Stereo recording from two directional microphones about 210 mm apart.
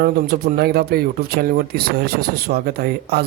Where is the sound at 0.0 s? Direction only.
45° right (ahead or behind).